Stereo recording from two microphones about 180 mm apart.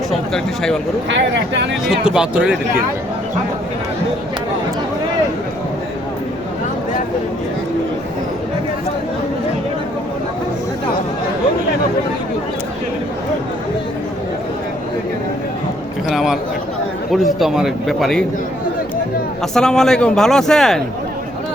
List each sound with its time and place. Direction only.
0.1 s speech: 5° left (ahead or behind)
1.1 s speech: 80° right
1.9 s speech: 5° right (ahead or behind)
16.0 s speech: centre (ahead or behind)
19.5 s speech: 5° left (ahead or behind)